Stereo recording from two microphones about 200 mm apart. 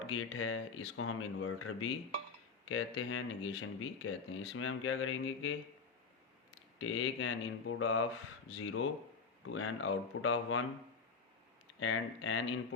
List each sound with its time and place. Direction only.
0.1 s speech: 90° left
6.7 s speech: 90° left
11.8 s speech: 90° left